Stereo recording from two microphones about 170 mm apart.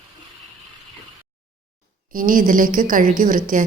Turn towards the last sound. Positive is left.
turn(degrees=-50)  # may be behind; listen again after turning